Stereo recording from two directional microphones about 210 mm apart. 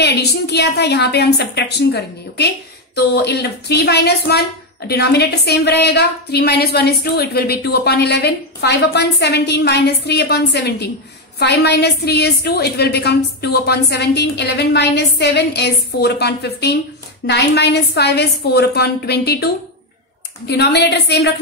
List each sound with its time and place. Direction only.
0.0 s a woman's voice: 50° left (ahead or behind)